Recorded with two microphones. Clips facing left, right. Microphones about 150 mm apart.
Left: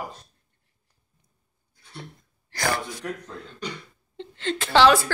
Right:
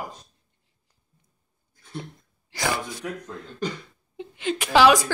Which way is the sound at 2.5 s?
15° right (ahead or behind).